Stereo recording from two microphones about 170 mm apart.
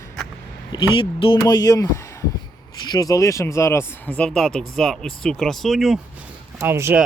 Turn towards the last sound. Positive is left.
turn(degrees=-15)  # may be behind; listen again after turning